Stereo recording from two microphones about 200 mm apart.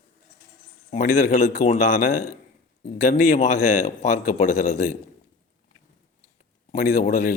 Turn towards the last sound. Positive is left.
turn(degrees=40)  # may be behind; listen again after turning